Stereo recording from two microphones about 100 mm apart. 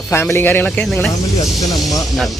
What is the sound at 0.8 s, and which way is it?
Speech, centre (ahead or behind).